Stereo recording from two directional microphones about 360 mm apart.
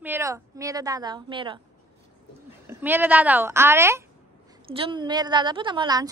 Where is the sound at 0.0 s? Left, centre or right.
Centre.